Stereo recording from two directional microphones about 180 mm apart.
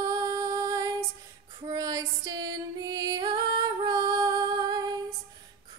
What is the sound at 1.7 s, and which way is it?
Music, 20° right (ahead or behind).